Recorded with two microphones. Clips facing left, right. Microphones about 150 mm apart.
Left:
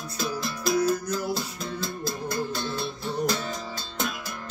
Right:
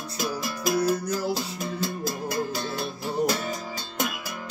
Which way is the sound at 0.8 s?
30° right (ahead or behind).